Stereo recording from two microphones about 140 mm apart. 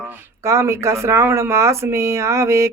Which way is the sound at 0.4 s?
20° right (ahead or behind).